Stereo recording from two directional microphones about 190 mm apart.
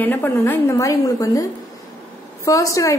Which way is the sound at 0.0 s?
10° left (ahead or behind).